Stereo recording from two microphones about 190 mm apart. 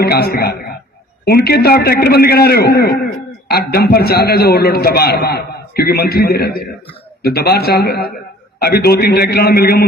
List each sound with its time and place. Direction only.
0.0 s a man's voice: 55° left (ahead or behind)